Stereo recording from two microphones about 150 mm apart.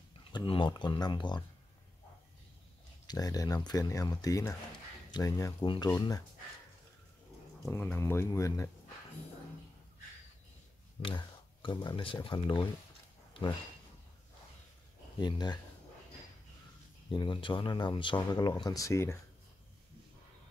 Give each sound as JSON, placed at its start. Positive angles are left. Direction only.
{"t": 0.3, "sound": "speech", "side_deg": 30}
{"t": 3.1, "sound": "speech", "side_deg": 25}
{"t": 7.7, "sound": "speech", "side_deg": 15}
{"t": 11.1, "sound": "speech", "side_deg": 35}
{"t": 13.4, "sound": "a sound", "side_deg": 35}
{"t": 15.1, "sound": "speech", "side_deg": 30}
{"t": 17.1, "sound": "speech", "side_deg": 30}